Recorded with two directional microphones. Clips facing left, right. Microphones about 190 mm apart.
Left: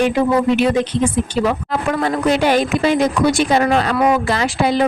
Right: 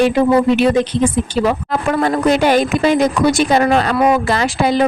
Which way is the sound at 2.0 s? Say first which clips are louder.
Right 3 dB; 45° right (ahead or behind).